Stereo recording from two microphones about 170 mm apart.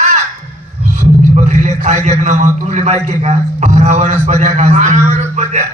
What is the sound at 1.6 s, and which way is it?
A man's voice, 45° right (ahead or behind).